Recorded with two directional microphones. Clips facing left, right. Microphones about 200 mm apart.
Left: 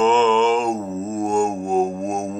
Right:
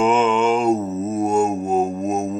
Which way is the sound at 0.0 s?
10° right (ahead or behind).